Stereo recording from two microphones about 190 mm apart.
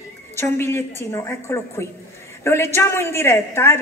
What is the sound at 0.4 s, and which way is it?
A woman's voice, 15° left (ahead or behind).